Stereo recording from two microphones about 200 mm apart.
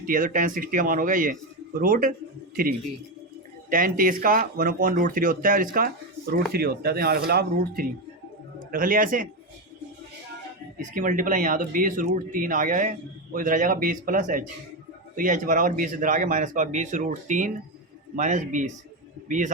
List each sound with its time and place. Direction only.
0.0 s speech: 40° right (ahead or behind)
10.9 s speech: 40° right (ahead or behind)